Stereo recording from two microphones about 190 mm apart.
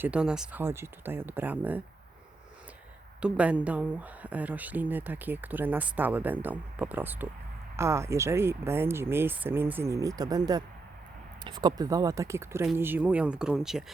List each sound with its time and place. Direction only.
0.0 s speech: 5° right (ahead or behind)
3.2 s speech: 5° right (ahead or behind)